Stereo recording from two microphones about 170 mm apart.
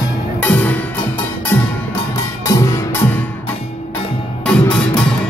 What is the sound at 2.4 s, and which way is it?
Music, 15° left (ahead or behind).